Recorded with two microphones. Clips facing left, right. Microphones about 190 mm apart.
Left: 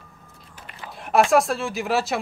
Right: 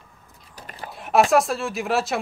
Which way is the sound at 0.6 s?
40° right (ahead or behind).